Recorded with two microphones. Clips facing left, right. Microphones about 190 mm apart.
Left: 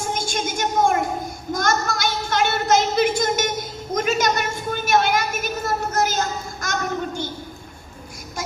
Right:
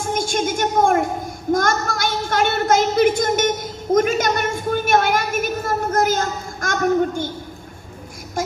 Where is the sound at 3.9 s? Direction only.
55° right (ahead or behind).